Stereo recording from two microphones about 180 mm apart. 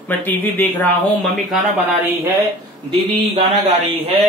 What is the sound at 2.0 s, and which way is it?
Speech, 10° right (ahead or behind).